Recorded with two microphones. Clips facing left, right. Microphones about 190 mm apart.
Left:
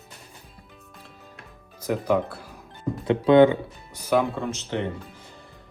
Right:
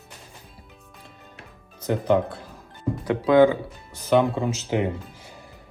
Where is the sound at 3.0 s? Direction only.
25° left (ahead or behind).